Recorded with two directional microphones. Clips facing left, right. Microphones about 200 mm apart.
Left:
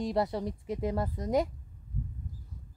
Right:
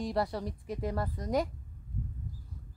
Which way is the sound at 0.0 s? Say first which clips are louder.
Left 2 dB; 20° left (ahead or behind).